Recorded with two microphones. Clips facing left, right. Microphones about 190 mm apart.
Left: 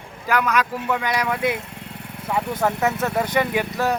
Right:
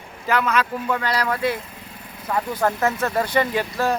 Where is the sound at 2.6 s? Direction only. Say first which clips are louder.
Right 1 dB; 5° left (ahead or behind).